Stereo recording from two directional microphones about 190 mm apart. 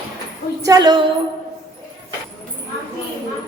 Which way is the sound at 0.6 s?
20° right (ahead or behind).